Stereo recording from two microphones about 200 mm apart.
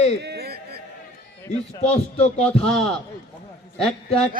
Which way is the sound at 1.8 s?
30° left (ahead or behind).